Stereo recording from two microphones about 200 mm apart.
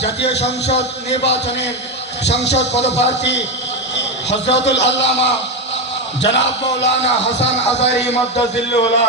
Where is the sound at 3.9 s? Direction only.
60° left (ahead or behind).